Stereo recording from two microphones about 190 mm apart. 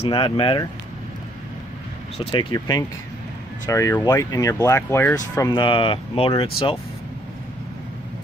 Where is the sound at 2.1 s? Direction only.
30° left (ahead or behind).